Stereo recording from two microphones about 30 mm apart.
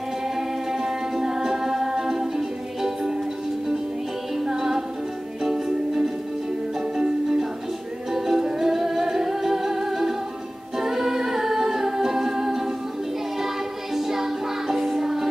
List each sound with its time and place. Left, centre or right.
0.4 s music: centre
4.5 s music: centre
10.8 s a capella: centre
13.9 s music: centre